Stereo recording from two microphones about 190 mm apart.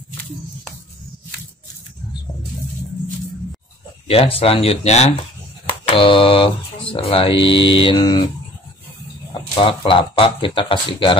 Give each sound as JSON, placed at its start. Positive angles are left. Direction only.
{"t": 4.1, "sound": "speech", "side_deg": 30}
{"t": 9.3, "sound": "speech", "side_deg": 25}